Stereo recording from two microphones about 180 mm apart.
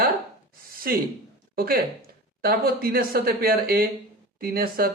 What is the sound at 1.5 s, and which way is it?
Speech, 55° right (ahead or behind).